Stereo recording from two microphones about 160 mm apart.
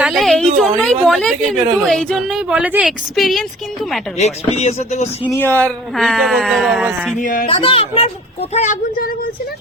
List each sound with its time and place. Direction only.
0.0 s a sound: centre (ahead or behind)
0.6 s a woman's voice: 5° left (ahead or behind)
4.2 s speech: 40° left (ahead or behind)
5.3 s a woman's voice: 10° left (ahead or behind); by 7.2 s 5° right (ahead or behind)
7.2 s speech: 60° left (ahead or behind)
7.4 s speech: 35° left (ahead or behind); by 9.0 s 50° left (ahead or behind)